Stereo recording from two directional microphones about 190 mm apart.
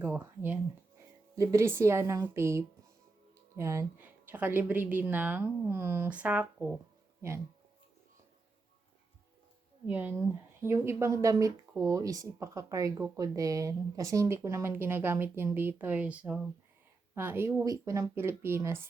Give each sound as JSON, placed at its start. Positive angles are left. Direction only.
{"t": 0.0, "sound": "speech", "side_deg": -10}
{"t": 9.8, "sound": "speech", "side_deg": -10}